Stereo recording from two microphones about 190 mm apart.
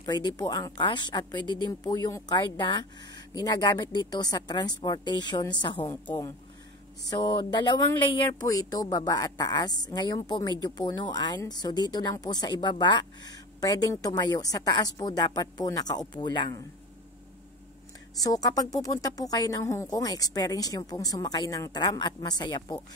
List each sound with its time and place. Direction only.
0.0 s speech: 20° left (ahead or behind)
7.1 s speech: 20° left (ahead or behind)
18.2 s speech: 20° left (ahead or behind)